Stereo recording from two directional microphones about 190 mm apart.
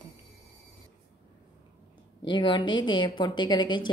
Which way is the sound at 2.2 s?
25° left (ahead or behind).